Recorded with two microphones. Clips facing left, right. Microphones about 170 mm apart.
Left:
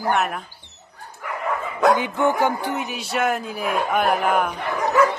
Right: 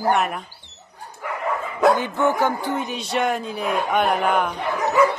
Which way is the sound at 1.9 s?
15° left (ahead or behind).